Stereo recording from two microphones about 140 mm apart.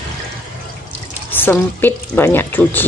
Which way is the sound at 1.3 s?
15° left (ahead or behind).